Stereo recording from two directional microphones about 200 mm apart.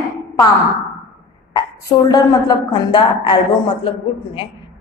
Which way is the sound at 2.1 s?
20° left (ahead or behind).